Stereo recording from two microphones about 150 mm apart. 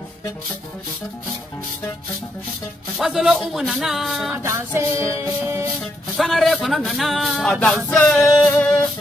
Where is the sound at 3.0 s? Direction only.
Centre (ahead or behind).